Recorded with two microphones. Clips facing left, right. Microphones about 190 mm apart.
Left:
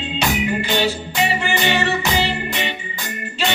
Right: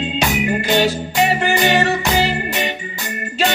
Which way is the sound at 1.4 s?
40° right (ahead or behind).